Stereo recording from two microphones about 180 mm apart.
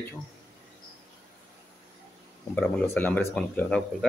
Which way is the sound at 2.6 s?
10° left (ahead or behind).